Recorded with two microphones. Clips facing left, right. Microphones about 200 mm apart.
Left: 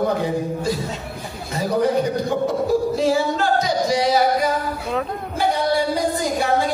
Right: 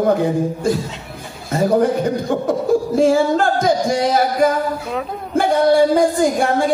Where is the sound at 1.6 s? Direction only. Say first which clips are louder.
Right 6 dB; 50° right (ahead or behind).